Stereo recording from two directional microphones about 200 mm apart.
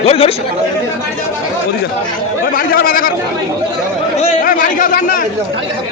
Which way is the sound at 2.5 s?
45° left (ahead or behind).